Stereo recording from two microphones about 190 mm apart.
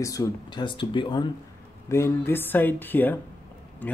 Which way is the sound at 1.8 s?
15° left (ahead or behind).